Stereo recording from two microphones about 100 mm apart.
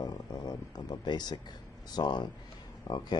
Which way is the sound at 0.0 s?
45° left (ahead or behind).